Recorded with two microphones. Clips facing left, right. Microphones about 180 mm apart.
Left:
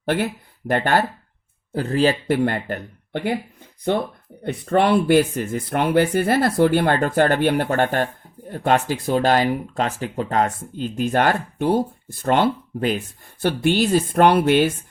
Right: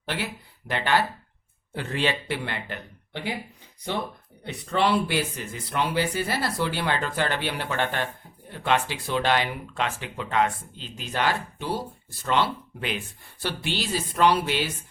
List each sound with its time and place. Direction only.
0.0 s speech: 50° left (ahead or behind)